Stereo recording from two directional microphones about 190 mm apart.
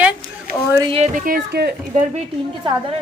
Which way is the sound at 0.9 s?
40° right (ahead or behind).